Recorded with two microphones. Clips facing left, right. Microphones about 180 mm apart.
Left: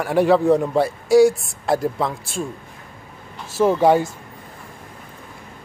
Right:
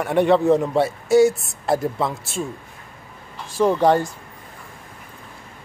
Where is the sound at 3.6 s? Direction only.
10° left (ahead or behind).